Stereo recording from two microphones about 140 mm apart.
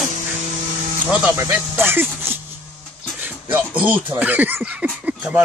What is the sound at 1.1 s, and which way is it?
Speech, 15° right (ahead or behind).